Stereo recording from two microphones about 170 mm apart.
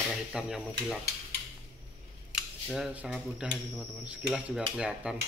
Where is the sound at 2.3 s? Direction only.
5° right (ahead or behind).